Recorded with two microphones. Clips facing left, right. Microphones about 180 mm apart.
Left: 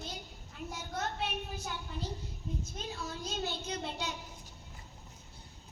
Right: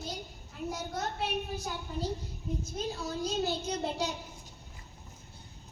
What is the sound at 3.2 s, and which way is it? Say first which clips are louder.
Speech: right 7 dB; 40° right (ahead or behind).